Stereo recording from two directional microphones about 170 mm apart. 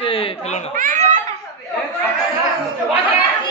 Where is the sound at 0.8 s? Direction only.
50° right (ahead or behind).